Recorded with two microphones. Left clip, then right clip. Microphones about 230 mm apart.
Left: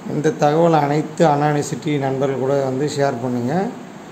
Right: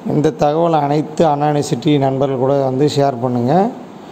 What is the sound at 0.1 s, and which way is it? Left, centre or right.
A man's voice, right.